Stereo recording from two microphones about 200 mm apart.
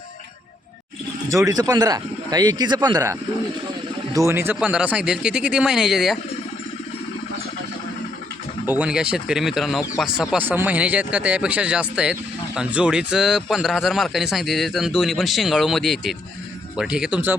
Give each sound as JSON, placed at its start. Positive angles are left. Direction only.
{"t": 1.5, "sound": "speech", "side_deg": -20}
{"t": 8.6, "sound": "speech", "side_deg": -10}